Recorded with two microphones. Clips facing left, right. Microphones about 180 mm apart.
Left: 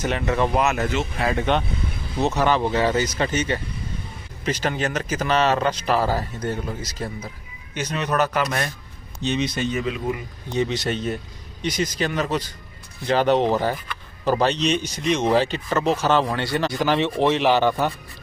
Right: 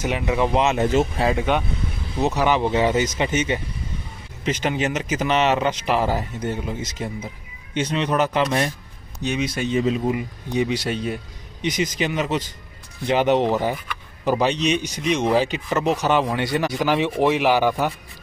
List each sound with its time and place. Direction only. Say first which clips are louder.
0.0 s speech: even; 10° right (ahead or behind)
0.6 s speech: right 3 dB; 25° right (ahead or behind)
1.3 s speech: even; 10° right (ahead or behind)
9.2 s speech: even; 10° right (ahead or behind)
9.7 s speech: right 5 dB; 30° right (ahead or behind)
10.0 s speech: right 4 dB; 15° right (ahead or behind); by 15.4 s centre (ahead or behind)
15.4 s speech: even; 15° right (ahead or behind)